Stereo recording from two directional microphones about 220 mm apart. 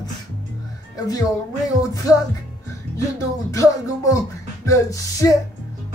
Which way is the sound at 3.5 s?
15° left (ahead or behind).